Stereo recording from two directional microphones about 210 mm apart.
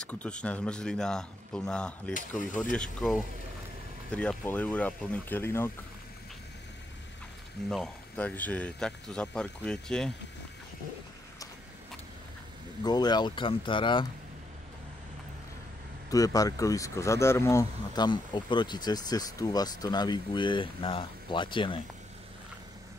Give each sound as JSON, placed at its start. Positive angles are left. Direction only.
{"t": 0.0, "sound": "speech", "side_deg": 5}
{"t": 7.7, "sound": "speech", "side_deg": 5}
{"t": 12.8, "sound": "speech", "side_deg": 20}
{"t": 16.1, "sound": "speech", "side_deg": 15}